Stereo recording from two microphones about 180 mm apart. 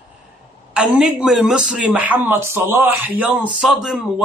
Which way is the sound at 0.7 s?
5° right (ahead or behind).